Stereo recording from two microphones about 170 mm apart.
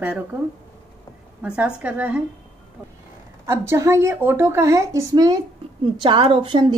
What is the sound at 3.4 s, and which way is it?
A woman's voice, 15° right (ahead or behind).